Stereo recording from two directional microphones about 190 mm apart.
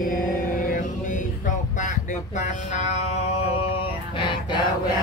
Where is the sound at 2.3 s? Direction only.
40° left (ahead or behind).